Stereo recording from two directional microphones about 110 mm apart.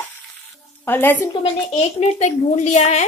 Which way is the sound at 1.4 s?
85° left.